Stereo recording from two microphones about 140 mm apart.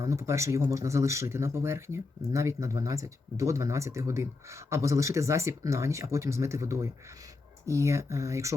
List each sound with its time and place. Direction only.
0.0 s speech: 20° right (ahead or behind)